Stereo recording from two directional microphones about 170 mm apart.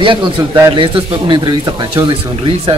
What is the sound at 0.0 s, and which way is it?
Speech, 30° right (ahead or behind).